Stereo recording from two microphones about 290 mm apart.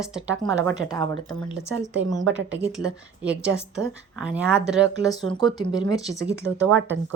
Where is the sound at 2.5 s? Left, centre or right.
Right.